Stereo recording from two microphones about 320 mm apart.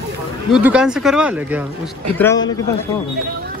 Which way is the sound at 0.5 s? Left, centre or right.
Centre.